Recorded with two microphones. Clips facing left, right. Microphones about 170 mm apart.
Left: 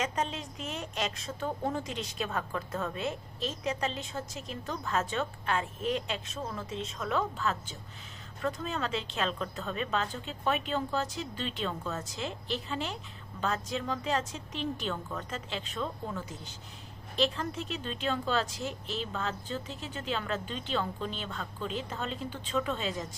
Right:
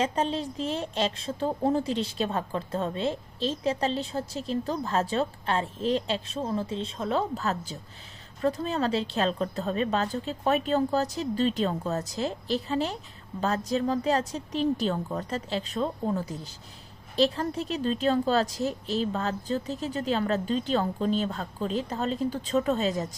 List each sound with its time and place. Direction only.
0.0 s a woman's voice: 30° right (ahead or behind)